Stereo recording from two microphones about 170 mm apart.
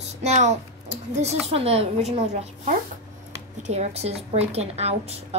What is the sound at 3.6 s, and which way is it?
A woman's voice, 40° right (ahead or behind).